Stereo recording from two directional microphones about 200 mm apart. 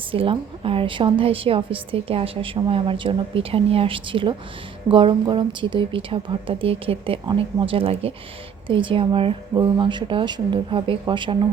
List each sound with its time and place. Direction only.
0.1 s a woman's voice: 25° right (ahead or behind)